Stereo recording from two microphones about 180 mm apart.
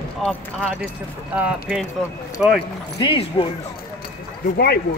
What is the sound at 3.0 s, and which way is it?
Speech, 30° left (ahead or behind).